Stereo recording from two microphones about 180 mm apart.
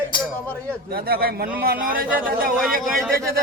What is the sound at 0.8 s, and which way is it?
Speech, 60° right (ahead or behind).